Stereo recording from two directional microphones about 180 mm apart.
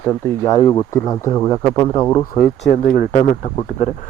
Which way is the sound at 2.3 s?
50° left (ahead or behind).